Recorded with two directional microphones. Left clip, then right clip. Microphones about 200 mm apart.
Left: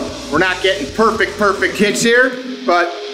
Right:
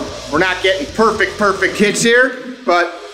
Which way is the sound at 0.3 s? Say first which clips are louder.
Even; 5° right (ahead or behind).